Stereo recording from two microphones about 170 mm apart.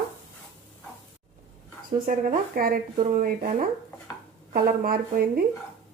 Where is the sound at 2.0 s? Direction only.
55° right (ahead or behind).